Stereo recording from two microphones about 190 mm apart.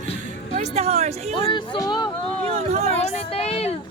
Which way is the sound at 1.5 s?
25° left (ahead or behind).